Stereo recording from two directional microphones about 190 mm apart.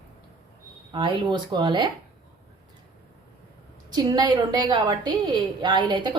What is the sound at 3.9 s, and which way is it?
A woman's voice, 20° right (ahead or behind).